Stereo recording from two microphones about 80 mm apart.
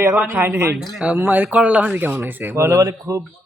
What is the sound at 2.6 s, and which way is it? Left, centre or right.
Speech, right.